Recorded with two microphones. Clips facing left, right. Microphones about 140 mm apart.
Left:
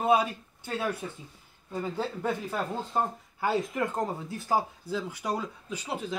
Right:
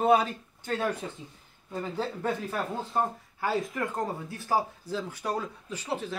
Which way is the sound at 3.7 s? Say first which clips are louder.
Left 1 dB; 20° left (ahead or behind).